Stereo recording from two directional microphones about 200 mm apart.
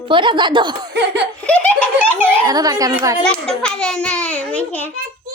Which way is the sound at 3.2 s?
5° left (ahead or behind).